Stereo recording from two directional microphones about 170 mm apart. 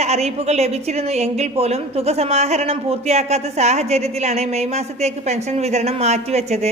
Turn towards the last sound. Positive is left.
turn(degrees=-40)  # may be behind; listen again after turning